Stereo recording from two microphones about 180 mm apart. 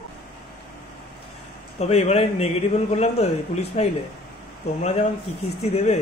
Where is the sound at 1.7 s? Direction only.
35° left (ahead or behind).